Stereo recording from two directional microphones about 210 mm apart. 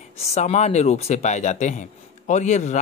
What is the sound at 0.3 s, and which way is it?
Speech, 35° left (ahead or behind).